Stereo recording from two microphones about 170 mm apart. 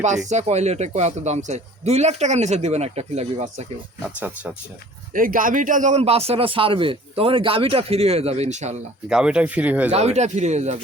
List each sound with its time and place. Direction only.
0.3 s a man's voice: 40° right (ahead or behind)
4.0 s speech: 10° right (ahead or behind)
5.1 s a man's voice: 55° right (ahead or behind)
9.0 s speech: 5° right (ahead or behind)
9.9 s a man's voice: 40° right (ahead or behind)